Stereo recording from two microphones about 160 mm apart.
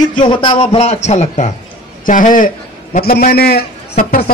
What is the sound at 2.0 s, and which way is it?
Speech, 55° left (ahead or behind).